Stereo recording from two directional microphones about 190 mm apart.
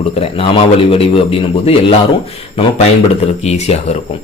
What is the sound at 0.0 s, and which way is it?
A man's voice, 30° left (ahead or behind).